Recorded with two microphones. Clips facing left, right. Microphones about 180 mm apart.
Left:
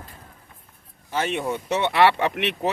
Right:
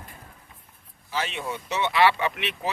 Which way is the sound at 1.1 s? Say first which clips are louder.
Left 5 dB; 50° left (ahead or behind).